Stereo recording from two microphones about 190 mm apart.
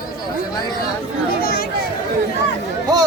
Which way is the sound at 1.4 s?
50° left (ahead or behind).